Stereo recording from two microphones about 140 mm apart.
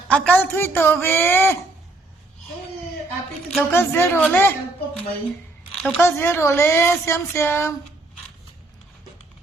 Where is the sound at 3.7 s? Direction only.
15° left (ahead or behind).